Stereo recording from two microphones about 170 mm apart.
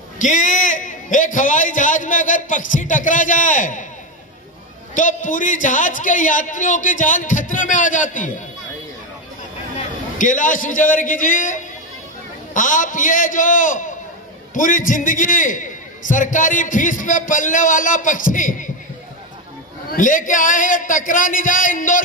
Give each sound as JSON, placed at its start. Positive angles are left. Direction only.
{"t": 0.2, "sound": "a man's voice", "side_deg": 50}
{"t": 4.9, "sound": "a man's voice", "side_deg": 50}
{"t": 9.8, "sound": "a man's voice", "side_deg": 50}
{"t": 19.9, "sound": "a man's voice", "side_deg": 50}